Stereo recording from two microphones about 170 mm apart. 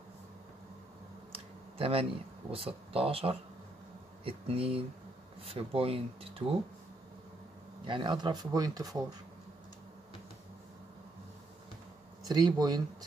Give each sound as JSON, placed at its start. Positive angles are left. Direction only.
{"t": 1.3, "sound": "a sound", "side_deg": -35}
{"t": 2.5, "sound": "speech", "side_deg": -35}
{"t": 7.8, "sound": "speech", "side_deg": -25}
{"t": 12.3, "sound": "speech", "side_deg": -25}